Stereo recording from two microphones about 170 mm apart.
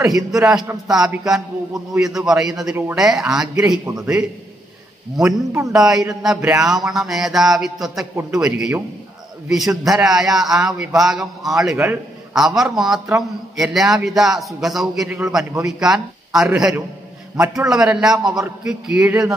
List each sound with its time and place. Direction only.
0.0 s a man's voice: centre (ahead or behind)
5.7 s a man's voice: centre (ahead or behind)
11.7 s a man's voice: 15° right (ahead or behind)
12.4 s a man's voice: centre (ahead or behind)
15.0 s a man's voice: 15° right (ahead or behind)
15.6 s a man's voice: 5° right (ahead or behind)